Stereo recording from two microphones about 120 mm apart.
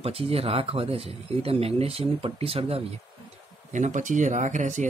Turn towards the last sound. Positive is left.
turn(degrees=-90)